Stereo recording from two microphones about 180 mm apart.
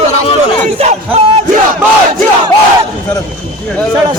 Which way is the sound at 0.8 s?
35° right (ahead or behind).